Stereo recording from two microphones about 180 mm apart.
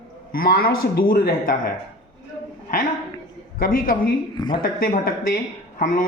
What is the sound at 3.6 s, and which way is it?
Speech, 50° left (ahead or behind).